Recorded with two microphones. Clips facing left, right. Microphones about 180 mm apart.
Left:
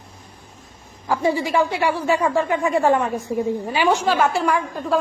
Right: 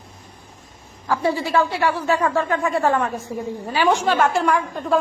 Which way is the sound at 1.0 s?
15° left (ahead or behind).